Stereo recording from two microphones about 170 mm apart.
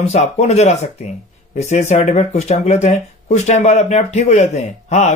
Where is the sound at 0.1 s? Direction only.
40° left (ahead or behind).